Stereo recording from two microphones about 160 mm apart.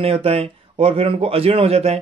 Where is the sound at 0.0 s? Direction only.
40° right (ahead or behind).